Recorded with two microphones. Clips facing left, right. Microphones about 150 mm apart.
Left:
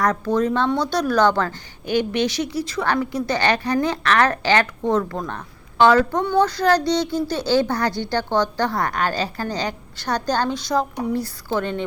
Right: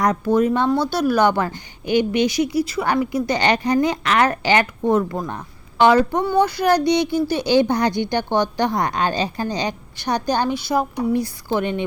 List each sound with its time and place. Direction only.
0.0 s speech: 10° right (ahead or behind)